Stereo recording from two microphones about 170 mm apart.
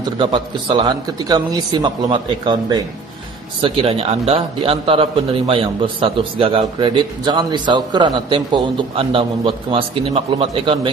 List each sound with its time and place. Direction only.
0.0 s a man's voice: 25° right (ahead or behind)